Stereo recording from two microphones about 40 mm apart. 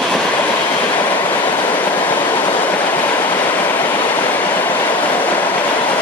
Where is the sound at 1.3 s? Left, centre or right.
Left.